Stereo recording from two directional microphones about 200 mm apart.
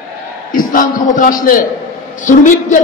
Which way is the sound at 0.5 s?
45° left (ahead or behind).